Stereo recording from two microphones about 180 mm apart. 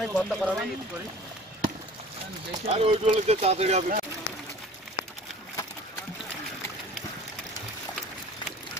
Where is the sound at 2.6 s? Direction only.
35° right (ahead or behind).